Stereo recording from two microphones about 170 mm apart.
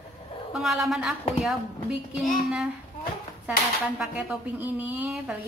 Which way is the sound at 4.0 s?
10° right (ahead or behind).